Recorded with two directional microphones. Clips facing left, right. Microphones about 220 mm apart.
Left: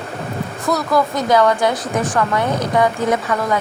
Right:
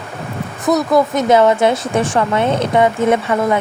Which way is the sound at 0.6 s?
20° right (ahead or behind).